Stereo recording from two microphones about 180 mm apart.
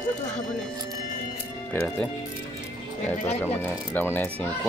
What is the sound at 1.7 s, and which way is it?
Speech, 10° left (ahead or behind).